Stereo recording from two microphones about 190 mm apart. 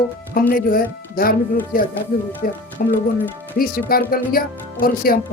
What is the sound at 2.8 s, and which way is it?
Speech, 50° left (ahead or behind).